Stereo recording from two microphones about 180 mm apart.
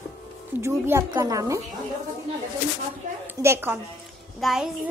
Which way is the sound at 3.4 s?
15° right (ahead or behind).